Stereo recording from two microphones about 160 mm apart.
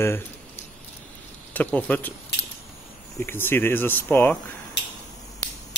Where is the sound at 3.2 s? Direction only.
15° left (ahead or behind).